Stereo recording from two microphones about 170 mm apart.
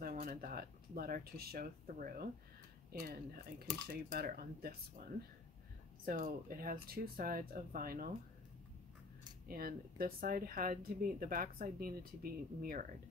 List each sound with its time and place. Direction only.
0.0 s speech: 50° right (ahead or behind)
6.0 s speech: 55° right (ahead or behind)
9.5 s speech: 60° right (ahead or behind)